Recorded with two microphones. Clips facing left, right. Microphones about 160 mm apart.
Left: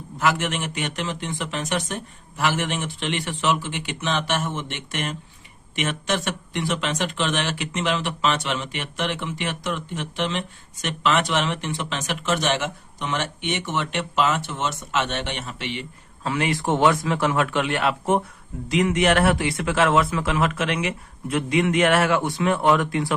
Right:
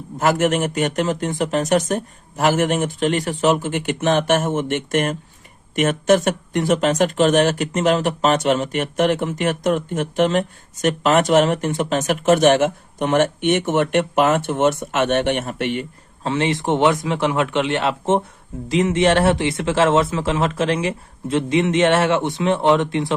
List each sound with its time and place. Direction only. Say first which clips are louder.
0.2 s speech: right 6 dB; 45° right (ahead or behind)
16.2 s speech: right 4 dB; 25° right (ahead or behind)